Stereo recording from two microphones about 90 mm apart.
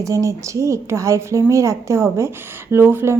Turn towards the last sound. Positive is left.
turn(degrees=-25)  # may be behind; listen again after turning